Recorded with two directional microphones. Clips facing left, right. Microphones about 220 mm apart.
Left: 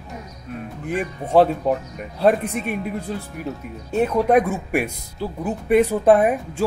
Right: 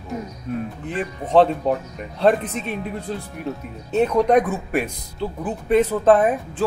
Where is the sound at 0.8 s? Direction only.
10° left (ahead or behind).